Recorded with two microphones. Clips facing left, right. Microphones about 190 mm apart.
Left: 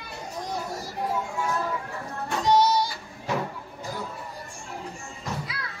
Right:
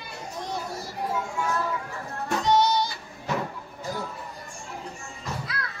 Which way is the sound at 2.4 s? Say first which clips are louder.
Left 1 dB; 35° left (ahead or behind).